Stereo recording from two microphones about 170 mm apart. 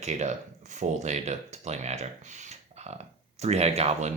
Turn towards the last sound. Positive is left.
turn(degrees=-40)  # may be behind; listen again after turning